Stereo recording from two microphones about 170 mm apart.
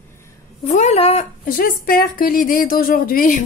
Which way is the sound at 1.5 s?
60° left (ahead or behind).